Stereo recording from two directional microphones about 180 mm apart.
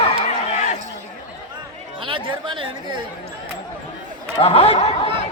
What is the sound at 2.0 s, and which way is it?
Speech, 30° right (ahead or behind).